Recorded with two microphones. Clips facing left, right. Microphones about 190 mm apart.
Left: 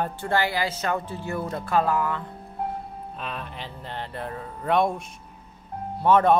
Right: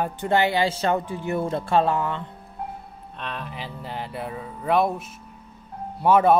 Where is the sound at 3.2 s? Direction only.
Centre (ahead or behind).